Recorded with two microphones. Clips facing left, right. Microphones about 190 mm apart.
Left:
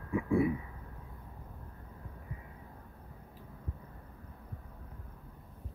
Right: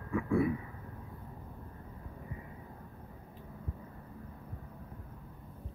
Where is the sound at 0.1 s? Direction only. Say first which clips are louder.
Left 1 dB; 20° left (ahead or behind).